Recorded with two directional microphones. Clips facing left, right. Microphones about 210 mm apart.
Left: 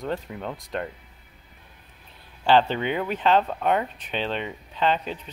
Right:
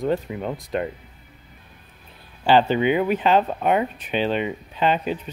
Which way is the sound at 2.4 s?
5° right (ahead or behind).